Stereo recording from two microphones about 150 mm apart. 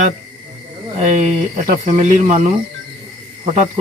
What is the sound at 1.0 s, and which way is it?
Speech, 50° right (ahead or behind).